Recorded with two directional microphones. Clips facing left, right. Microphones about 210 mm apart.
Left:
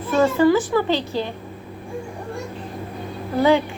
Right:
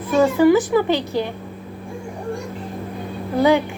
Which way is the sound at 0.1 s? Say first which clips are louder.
Right 2 dB; 15° right (ahead or behind).